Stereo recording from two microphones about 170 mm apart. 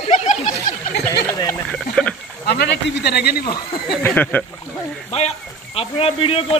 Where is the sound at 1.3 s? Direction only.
15° left (ahead or behind).